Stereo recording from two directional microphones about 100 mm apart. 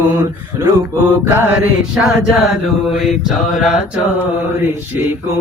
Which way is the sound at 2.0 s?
5° right (ahead or behind).